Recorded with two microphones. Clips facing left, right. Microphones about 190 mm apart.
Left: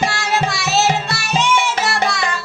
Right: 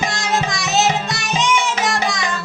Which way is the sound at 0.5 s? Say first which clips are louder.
Left 1 dB; 15° right (ahead or behind).